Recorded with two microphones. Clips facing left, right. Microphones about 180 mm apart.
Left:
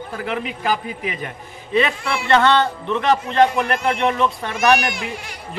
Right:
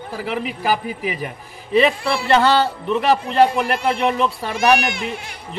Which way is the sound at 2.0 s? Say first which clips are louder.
Right 3 dB; 35° right (ahead or behind).